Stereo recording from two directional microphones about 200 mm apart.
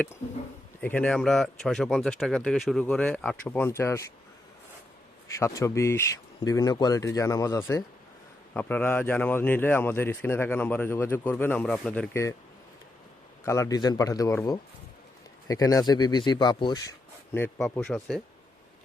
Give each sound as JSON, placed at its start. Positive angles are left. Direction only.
{"t": 0.8, "sound": "speech", "side_deg": 10}
{"t": 5.4, "sound": "speech", "side_deg": 15}
{"t": 13.4, "sound": "speech", "side_deg": 15}
{"t": 17.3, "sound": "speech", "side_deg": 5}